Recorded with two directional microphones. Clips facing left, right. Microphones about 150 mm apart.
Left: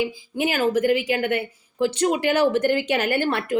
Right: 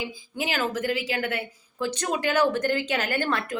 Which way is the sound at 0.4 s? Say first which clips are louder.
Left 7 dB; 15° left (ahead or behind).